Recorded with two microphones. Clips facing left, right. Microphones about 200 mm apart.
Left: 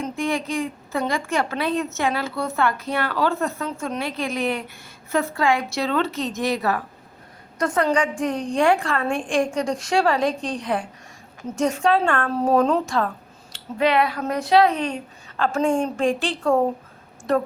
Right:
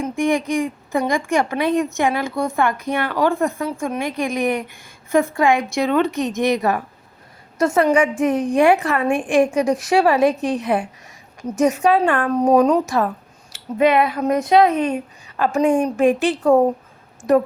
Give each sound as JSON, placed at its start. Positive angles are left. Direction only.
{"t": 0.0, "sound": "a woman's voice", "side_deg": -15}
{"t": 10.2, "sound": "a woman's voice", "side_deg": -5}
{"t": 10.5, "sound": "a woman's voice", "side_deg": -25}